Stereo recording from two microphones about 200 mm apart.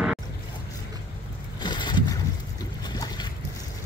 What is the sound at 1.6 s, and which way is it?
Vehicle, 20° left (ahead or behind).